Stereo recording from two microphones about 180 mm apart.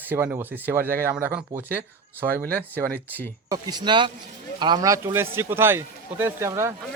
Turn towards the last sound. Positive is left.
turn(degrees=-15)  # may be behind; listen again after turning